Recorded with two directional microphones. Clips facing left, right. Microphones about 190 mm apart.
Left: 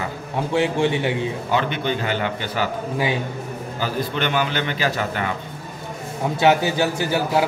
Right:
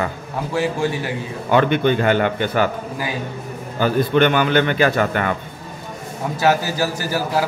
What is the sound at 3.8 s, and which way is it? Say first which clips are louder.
A man's voice: right 9 dB; 55° right (ahead or behind).